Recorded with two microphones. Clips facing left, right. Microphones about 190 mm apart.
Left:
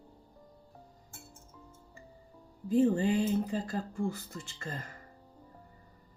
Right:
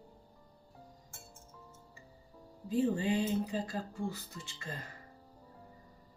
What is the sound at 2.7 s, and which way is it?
Speech, 50° left (ahead or behind).